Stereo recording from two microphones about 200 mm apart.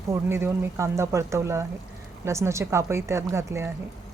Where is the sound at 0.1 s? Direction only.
10° right (ahead or behind).